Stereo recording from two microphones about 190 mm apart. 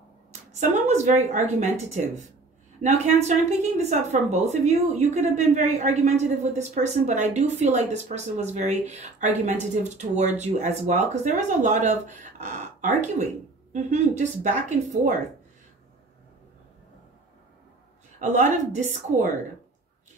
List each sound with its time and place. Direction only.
0.3 s a woman's voice: 35° right (ahead or behind)
18.2 s a woman's voice: 40° right (ahead or behind)